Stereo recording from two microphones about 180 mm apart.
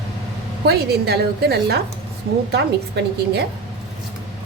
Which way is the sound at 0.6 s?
65° right (ahead or behind).